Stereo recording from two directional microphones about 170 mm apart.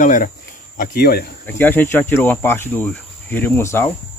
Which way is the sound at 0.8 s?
65° left (ahead or behind).